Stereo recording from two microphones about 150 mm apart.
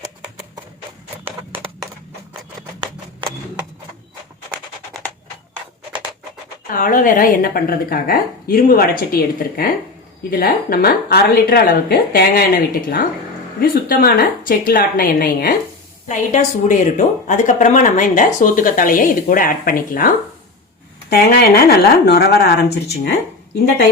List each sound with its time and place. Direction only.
6.7 s a woman's voice: 60° left (ahead or behind); by 15.5 s 80° left
16.0 s a woman's voice: 55° left (ahead or behind)
21.1 s speech: 90° left